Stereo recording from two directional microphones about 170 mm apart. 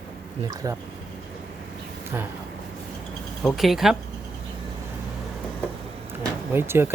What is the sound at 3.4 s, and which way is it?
Speech, centre (ahead or behind).